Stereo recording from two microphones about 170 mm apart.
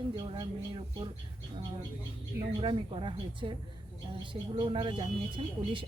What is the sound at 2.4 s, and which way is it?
Speech, 30° right (ahead or behind).